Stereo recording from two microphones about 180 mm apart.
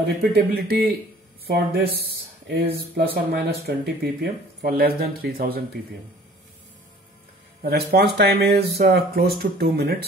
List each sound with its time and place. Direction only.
0.0 s speech: 60° right (ahead or behind)
7.6 s speech: 60° right (ahead or behind)